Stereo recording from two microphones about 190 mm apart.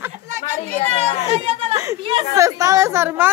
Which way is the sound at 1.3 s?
30° right (ahead or behind).